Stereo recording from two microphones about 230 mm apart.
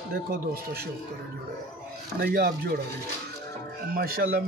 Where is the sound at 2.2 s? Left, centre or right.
Right.